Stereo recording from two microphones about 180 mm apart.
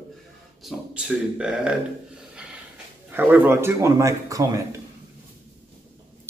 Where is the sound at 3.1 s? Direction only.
10° right (ahead or behind).